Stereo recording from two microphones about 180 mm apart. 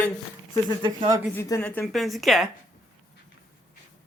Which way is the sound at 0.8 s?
25° right (ahead or behind).